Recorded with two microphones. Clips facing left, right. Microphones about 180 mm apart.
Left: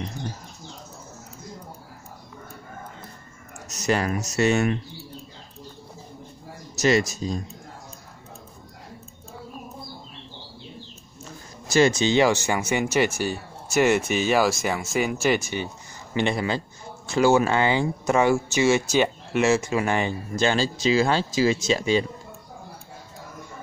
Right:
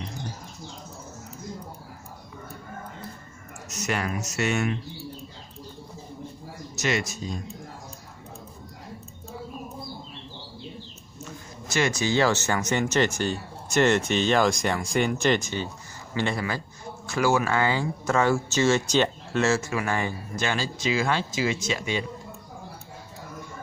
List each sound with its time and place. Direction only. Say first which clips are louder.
3.7 s speech: left 5 dB; 35° left (ahead or behind)
6.7 s speech: left 7 dB; 40° left (ahead or behind)
11.7 s speech: left 5 dB; 25° left (ahead or behind)